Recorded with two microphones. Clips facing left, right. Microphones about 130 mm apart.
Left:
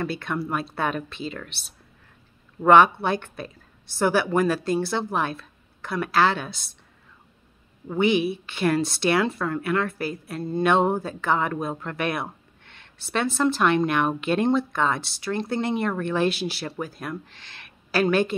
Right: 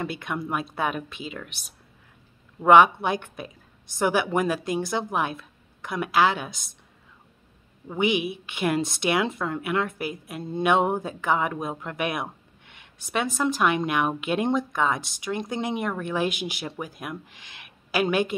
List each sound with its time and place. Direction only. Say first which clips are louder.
0.0 s speech: left 2 dB; 15° right (ahead or behind)
2.6 s speech: even; 10° right (ahead or behind)
7.9 s speech: left 3 dB; 15° right (ahead or behind)